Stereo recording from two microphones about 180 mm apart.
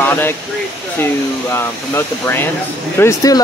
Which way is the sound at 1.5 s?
15° left (ahead or behind).